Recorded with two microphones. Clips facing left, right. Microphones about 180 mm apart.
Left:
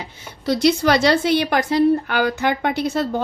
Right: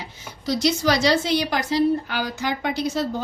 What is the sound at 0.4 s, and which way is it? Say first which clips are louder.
A woman's voice: left 4 dB; 60° left (ahead or behind).